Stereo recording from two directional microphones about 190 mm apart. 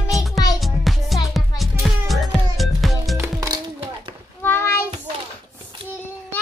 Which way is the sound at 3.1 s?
20° right (ahead or behind).